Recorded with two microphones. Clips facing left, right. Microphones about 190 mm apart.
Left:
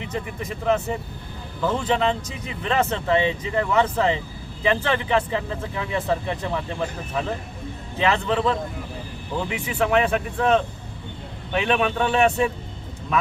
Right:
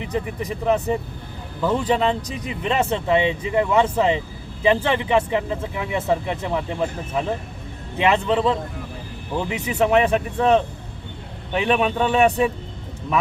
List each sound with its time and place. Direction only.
0.1 s speech: 15° right (ahead or behind)